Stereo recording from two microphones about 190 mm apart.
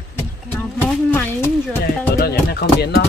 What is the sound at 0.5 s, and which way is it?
Speech, 10° left (ahead or behind).